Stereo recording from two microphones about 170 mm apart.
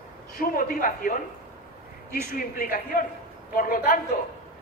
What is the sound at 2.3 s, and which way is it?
Speech, 60° left (ahead or behind).